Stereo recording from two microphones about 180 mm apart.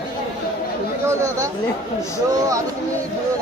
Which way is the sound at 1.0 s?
15° right (ahead or behind).